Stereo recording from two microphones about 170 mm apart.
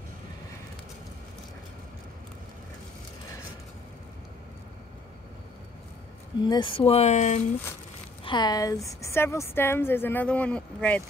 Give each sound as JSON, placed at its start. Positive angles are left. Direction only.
{"t": 6.4, "sound": "speech", "side_deg": 30}
{"t": 8.2, "sound": "a woman's voice", "side_deg": 25}